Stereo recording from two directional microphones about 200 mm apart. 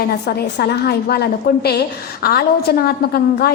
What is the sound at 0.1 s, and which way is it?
A woman's voice, 50° left (ahead or behind).